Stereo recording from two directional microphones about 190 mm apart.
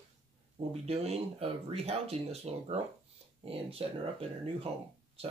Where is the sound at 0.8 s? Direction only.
30° right (ahead or behind).